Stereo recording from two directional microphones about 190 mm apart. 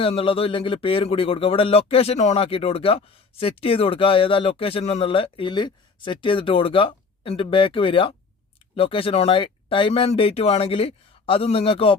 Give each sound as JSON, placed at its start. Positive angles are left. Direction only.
{"t": 0.0, "sound": "speech", "side_deg": 30}